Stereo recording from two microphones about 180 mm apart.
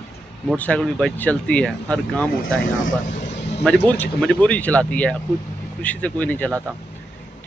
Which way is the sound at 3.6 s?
5° left (ahead or behind).